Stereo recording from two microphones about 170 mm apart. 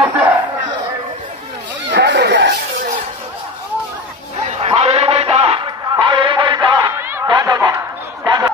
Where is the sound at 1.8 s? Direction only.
90° right.